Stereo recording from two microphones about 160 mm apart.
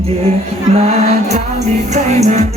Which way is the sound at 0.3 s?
40° right (ahead or behind).